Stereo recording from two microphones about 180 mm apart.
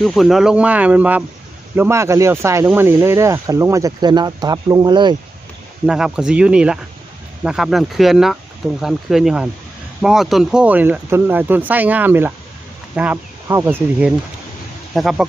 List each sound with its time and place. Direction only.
0.0 s speech: centre (ahead or behind); by 5.1 s 25° right (ahead or behind)
5.8 s speech: 5° right (ahead or behind)
14.9 s speech: centre (ahead or behind)